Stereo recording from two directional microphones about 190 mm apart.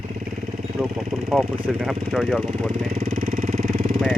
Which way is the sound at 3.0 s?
50° right (ahead or behind).